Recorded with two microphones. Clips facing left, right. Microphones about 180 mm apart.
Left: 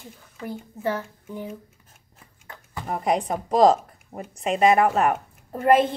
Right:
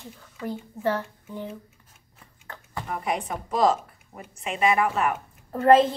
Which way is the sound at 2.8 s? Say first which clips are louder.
Left 5 dB; 35° left (ahead or behind).